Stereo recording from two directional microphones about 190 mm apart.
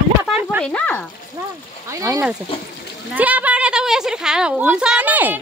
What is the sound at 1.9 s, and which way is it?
A woman's voice, 15° right (ahead or behind).